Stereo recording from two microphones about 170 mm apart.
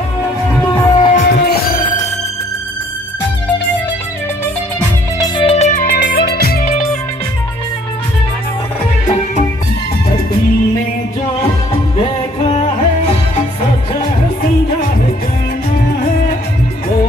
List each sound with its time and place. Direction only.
0.5 s music: 10° left (ahead or behind)
1.1 s music: 65° left (ahead or behind)
5.2 s music: 35° left (ahead or behind); by 6.7 s 65° left (ahead or behind)
12.4 s music: 35° left (ahead or behind)